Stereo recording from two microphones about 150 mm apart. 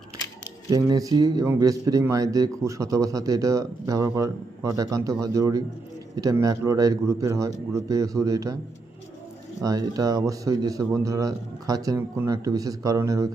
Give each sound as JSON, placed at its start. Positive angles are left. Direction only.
{"t": 0.7, "sound": "a man's voice", "side_deg": -25}
{"t": 9.6, "sound": "a man's voice", "side_deg": -25}